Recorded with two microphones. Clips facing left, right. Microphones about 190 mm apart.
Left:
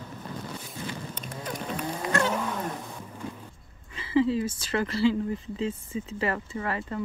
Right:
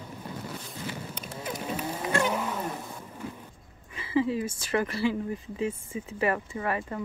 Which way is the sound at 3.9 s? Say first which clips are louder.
Left 2 dB; 25° left (ahead or behind).